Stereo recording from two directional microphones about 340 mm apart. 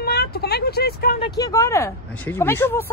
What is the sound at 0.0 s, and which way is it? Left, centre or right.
Vehicle, left.